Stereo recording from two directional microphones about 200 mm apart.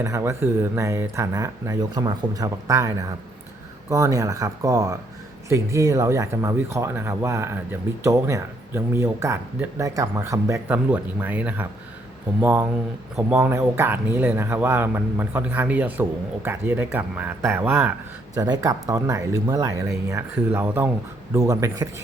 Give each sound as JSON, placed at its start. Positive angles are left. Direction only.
{"t": 0.0, "sound": "speech", "side_deg": -15}